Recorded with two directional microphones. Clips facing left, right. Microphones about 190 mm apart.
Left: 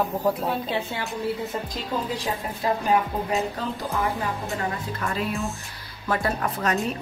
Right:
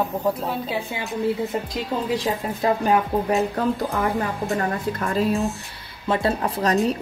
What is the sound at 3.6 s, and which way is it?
Speech, 55° right (ahead or behind).